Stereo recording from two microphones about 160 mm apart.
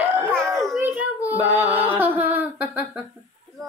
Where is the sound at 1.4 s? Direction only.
10° right (ahead or behind).